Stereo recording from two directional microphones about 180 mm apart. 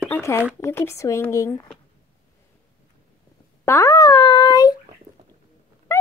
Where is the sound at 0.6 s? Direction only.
15° left (ahead or behind).